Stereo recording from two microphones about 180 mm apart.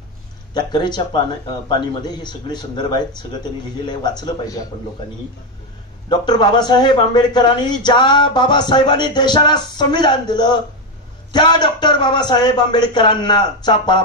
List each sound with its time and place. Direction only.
0.6 s a man's voice: 25° left (ahead or behind)
6.0 s a man's voice: 25° left (ahead or behind)